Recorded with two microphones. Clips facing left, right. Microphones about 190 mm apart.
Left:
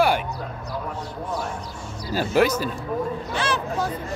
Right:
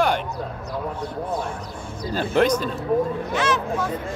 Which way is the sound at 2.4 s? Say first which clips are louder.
Right 1 dB; 5° left (ahead or behind).